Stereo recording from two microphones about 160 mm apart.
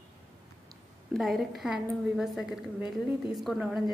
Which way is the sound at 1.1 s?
Centre (ahead or behind).